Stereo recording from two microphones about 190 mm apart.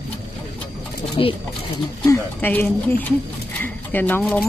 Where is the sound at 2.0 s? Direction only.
15° left (ahead or behind).